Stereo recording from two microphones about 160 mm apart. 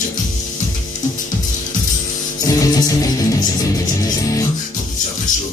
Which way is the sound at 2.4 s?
20° left (ahead or behind).